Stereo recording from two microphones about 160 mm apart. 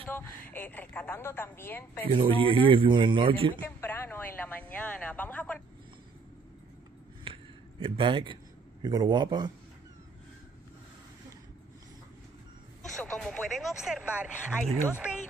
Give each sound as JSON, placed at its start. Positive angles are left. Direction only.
{"t": 0.0, "sound": "a woman's voice", "side_deg": 10}
{"t": 2.1, "sound": "a man's voice", "side_deg": -30}
{"t": 3.5, "sound": "a woman's voice", "side_deg": 15}
{"t": 7.8, "sound": "a man's voice", "side_deg": -30}
{"t": 12.9, "sound": "speech", "side_deg": 0}